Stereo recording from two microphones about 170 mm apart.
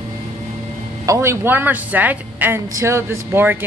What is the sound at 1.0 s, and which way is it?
A woman's voice, 15° right (ahead or behind).